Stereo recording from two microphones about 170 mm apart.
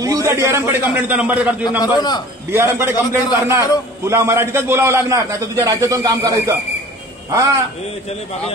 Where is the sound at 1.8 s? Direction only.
25° left (ahead or behind).